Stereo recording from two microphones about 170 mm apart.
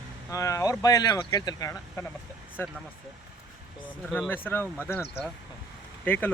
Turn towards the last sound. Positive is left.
turn(degrees=10)  # may be behind; listen again after turning